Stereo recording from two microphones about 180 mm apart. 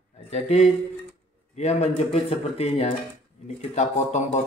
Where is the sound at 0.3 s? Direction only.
35° left (ahead or behind).